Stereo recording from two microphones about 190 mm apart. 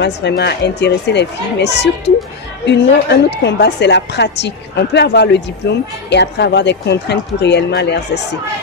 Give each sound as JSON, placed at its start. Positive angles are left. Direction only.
{"t": 0.0, "sound": "speech", "side_deg": 60}